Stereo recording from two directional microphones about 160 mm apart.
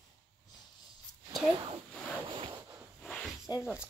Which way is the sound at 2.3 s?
30° right (ahead or behind).